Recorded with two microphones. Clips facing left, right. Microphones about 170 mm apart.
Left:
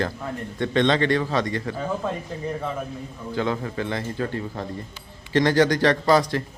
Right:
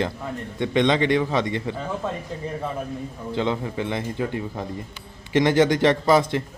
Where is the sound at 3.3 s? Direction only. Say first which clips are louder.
Right 1 dB; 20° right (ahead or behind).